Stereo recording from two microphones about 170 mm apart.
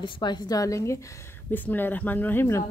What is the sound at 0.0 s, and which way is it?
A woman's voice, 25° left (ahead or behind).